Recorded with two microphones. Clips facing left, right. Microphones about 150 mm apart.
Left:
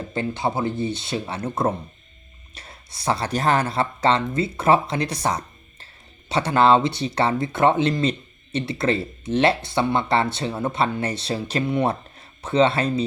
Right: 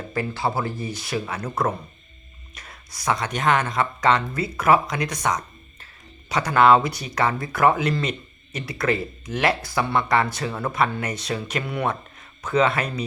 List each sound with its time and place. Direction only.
0.1 s speech: 25° left (ahead or behind)